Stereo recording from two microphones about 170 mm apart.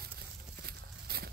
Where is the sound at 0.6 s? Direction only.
65° right (ahead or behind).